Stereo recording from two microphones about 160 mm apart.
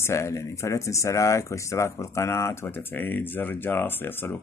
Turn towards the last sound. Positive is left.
turn(degrees=15)  # may be behind; listen again after turning